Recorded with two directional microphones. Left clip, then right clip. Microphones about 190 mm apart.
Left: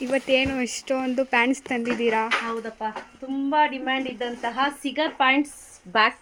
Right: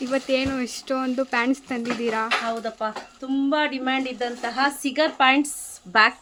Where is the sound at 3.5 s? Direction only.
25° right (ahead or behind).